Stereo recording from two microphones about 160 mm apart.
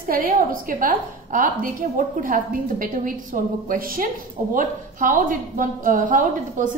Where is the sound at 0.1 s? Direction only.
60° right (ahead or behind).